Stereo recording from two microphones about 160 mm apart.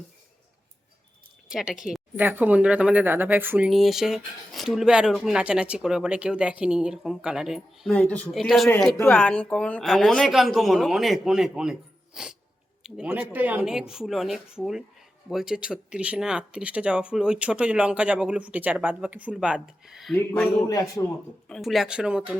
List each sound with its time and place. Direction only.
1.5 s speech: 5° right (ahead or behind)
3.7 s speech: centre (ahead or behind)
20.7 s a man's voice: 20° left (ahead or behind)
21.5 s speech: centre (ahead or behind)